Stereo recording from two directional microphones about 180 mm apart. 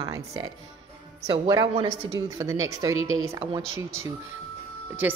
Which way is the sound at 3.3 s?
30° right (ahead or behind).